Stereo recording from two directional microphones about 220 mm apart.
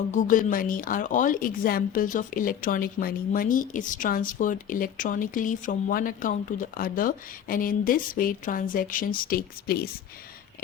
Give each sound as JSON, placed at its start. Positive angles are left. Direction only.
{"t": 0.1, "sound": "speech", "side_deg": 35}